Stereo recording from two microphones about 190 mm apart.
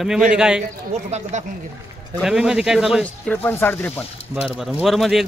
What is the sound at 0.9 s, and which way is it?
Speech, 40° right (ahead or behind).